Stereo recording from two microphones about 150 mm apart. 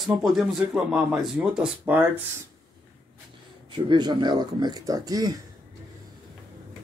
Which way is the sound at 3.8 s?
30° right (ahead or behind).